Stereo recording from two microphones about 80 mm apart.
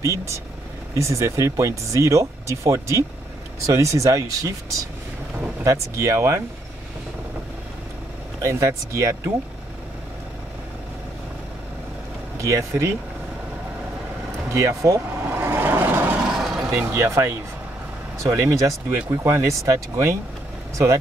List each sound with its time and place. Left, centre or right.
0.0 s speech: right
5.6 s speech: right
8.4 s speech: right
12.4 s speech: right
14.5 s speech: right
15.3 s vehicle: right
16.2 s vehicle: centre
16.7 s speech: right